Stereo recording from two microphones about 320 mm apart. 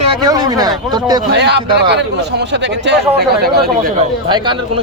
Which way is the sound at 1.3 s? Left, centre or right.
Right.